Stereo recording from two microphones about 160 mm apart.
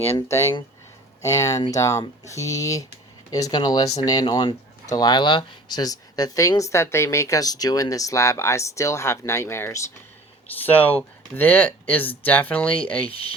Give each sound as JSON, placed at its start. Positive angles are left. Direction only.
{"t": 0.0, "sound": "speech", "side_deg": 15}
{"t": 13.1, "sound": "speech", "side_deg": 35}